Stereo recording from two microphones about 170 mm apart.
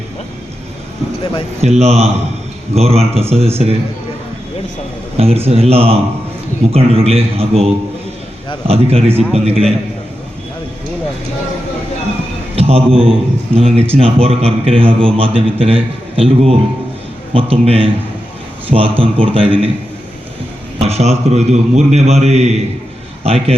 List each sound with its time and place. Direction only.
1.6 s a man's voice: 40° right (ahead or behind)
5.1 s a man's voice: 35° right (ahead or behind)
12.5 s a man's voice: 35° right (ahead or behind)
20.7 s a man's voice: 40° right (ahead or behind)